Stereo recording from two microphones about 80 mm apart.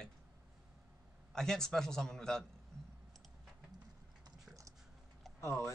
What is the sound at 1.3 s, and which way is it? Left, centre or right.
A man's voice, centre.